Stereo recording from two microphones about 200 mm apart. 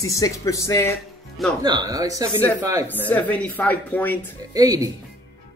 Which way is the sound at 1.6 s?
20° right (ahead or behind).